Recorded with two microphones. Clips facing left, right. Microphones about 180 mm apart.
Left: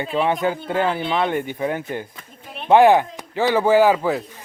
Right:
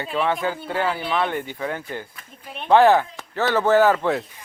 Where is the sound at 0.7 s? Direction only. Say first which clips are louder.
Left 1 dB; 20° left (ahead or behind); by 4.3 s 5° left (ahead or behind).